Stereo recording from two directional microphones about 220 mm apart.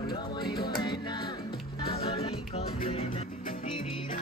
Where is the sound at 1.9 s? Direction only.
25° left (ahead or behind).